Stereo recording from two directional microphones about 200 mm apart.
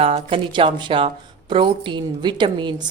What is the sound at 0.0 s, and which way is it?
A woman's voice, 30° right (ahead or behind).